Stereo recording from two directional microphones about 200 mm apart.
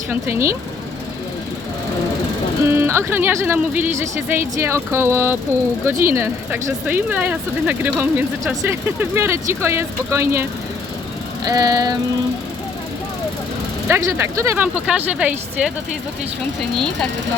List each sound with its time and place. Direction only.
0.1 s speech: 15° right (ahead or behind)
2.6 s speech: 10° right (ahead or behind)
11.4 s speech: 20° right (ahead or behind)
13.8 s speech: 15° right (ahead or behind)
16.7 s speech: 5° left (ahead or behind)